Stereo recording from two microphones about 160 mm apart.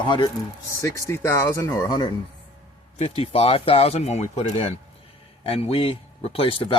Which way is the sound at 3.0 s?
40° left (ahead or behind).